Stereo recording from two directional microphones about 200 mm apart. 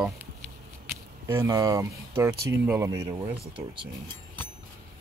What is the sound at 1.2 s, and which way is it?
Speech, 15° right (ahead or behind).